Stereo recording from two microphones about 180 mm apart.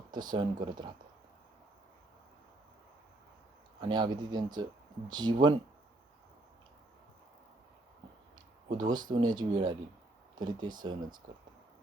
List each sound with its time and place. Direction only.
0.1 s speech: 25° right (ahead or behind)
3.8 s speech: 25° right (ahead or behind)
8.8 s speech: 25° right (ahead or behind)